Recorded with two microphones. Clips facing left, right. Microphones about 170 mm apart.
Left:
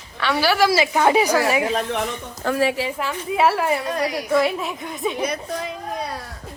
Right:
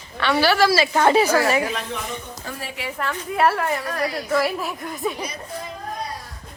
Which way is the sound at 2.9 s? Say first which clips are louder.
Left 1 dB; 5° left (ahead or behind).